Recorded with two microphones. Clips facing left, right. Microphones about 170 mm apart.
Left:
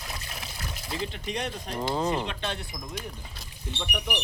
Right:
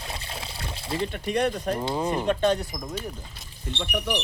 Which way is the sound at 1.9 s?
10° right (ahead or behind).